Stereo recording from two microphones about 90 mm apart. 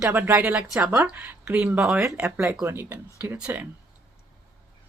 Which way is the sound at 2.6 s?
25° right (ahead or behind).